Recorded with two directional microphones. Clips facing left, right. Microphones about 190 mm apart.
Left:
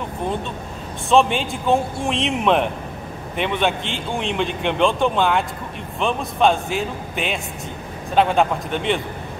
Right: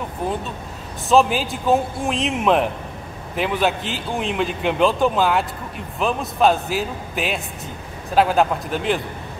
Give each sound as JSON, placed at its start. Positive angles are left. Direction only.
{"t": 1.0, "sound": "a man's voice", "side_deg": 0}